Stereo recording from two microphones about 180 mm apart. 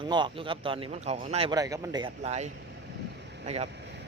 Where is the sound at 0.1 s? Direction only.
25° right (ahead or behind).